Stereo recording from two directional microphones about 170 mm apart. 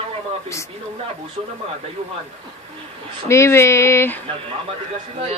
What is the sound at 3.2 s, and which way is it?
Speech, 15° left (ahead or behind).